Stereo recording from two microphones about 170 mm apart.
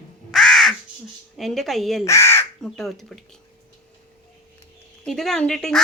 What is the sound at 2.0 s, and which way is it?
Speech, 15° left (ahead or behind).